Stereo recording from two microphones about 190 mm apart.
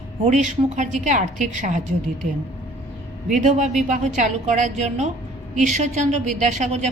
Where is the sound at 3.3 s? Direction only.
40° right (ahead or behind).